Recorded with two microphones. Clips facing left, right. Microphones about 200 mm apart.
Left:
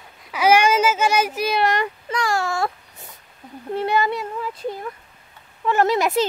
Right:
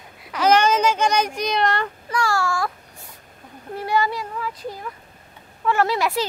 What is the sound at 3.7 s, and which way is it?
Speech, 25° left (ahead or behind).